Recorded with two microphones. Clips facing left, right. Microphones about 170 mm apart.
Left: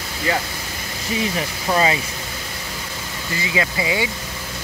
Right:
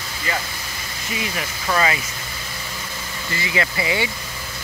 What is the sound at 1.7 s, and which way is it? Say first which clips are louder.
Speech: left 2 dB; 20° left (ahead or behind).